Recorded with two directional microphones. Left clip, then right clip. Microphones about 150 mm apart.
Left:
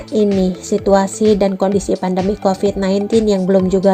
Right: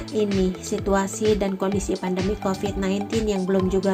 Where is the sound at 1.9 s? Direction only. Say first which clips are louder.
Left 9 dB; 65° left (ahead or behind).